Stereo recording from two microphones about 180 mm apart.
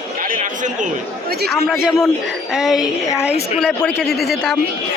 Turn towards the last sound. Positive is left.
turn(degrees=0)  # may be behind; listen again after turning